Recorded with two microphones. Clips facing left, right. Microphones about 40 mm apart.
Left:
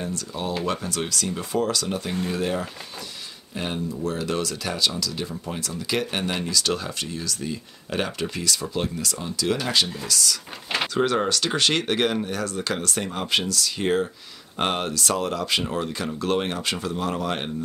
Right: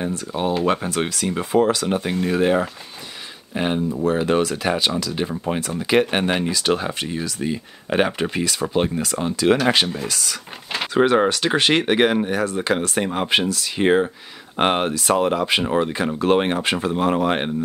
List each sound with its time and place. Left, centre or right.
0.0 s speech: right